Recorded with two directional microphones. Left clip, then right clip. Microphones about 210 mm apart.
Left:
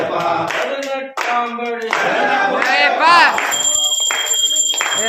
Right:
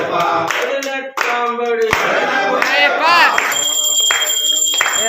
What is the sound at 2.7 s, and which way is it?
Music, 20° left (ahead or behind).